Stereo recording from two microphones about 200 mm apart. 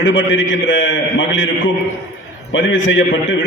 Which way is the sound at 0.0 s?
70° left (ahead or behind).